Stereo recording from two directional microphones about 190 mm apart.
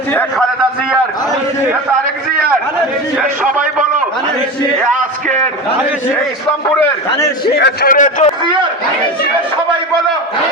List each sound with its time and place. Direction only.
0.1 s a man's voice: 10° left (ahead or behind)
7.4 s a man's voice: 60° left (ahead or behind)
7.9 s a man's voice: 40° left (ahead or behind)